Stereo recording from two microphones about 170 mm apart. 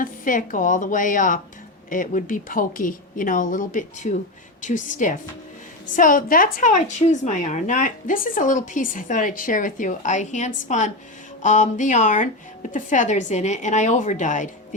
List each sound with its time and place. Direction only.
0.0 s a woman's voice: 50° left (ahead or behind)